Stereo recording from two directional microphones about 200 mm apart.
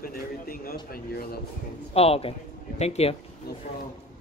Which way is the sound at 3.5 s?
55° left (ahead or behind).